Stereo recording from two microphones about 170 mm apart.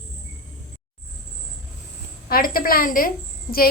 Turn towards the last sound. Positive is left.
turn(degrees=60)  # may be behind; listen again after turning